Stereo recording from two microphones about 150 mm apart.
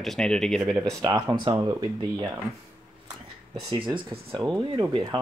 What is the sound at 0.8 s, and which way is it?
Speech, 20° right (ahead or behind).